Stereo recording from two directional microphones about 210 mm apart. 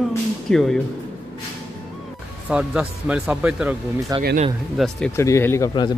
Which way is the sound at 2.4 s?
5° right (ahead or behind).